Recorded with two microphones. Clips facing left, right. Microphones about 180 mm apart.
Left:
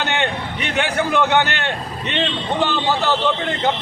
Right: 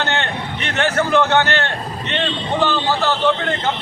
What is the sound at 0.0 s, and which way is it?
A man's voice, 15° left (ahead or behind).